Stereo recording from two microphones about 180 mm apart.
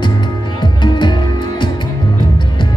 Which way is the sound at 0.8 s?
25° left (ahead or behind).